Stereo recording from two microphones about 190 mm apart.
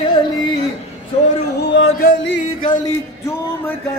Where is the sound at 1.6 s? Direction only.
75° left (ahead or behind).